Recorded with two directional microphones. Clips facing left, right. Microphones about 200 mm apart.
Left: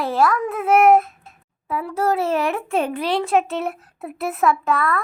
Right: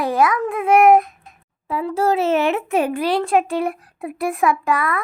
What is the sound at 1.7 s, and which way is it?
A child's voice, 25° right (ahead or behind).